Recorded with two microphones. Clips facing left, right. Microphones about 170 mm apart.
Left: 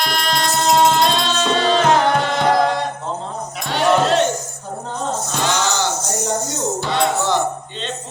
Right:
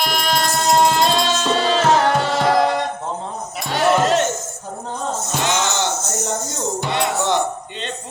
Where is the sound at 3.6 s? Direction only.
10° right (ahead or behind).